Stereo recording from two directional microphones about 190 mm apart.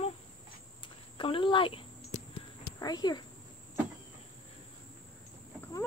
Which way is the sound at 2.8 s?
20° left (ahead or behind).